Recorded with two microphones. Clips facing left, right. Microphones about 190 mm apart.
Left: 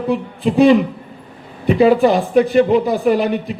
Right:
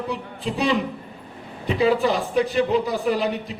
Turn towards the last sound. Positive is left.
turn(degrees=55)  # may be behind; listen again after turning